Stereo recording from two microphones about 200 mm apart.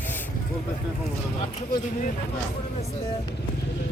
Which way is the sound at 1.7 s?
40° left (ahead or behind).